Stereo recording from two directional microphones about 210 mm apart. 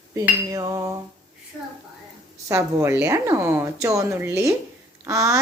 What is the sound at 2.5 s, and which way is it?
A woman's voice, 10° right (ahead or behind).